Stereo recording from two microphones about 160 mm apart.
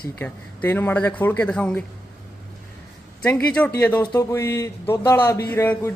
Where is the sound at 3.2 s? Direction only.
10° left (ahead or behind).